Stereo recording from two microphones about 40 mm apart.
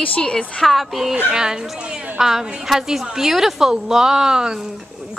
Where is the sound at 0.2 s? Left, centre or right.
Left.